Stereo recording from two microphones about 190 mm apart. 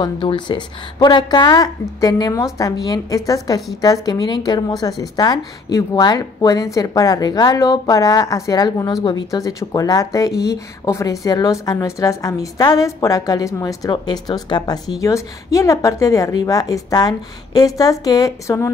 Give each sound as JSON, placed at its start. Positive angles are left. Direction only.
{"t": 0.0, "sound": "a woman's voice", "side_deg": 25}